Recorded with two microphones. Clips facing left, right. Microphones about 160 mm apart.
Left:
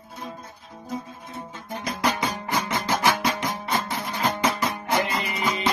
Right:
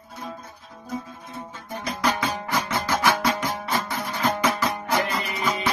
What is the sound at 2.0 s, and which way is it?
Music, 20° left (ahead or behind).